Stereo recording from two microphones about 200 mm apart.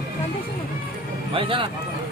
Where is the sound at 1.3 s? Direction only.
25° right (ahead or behind).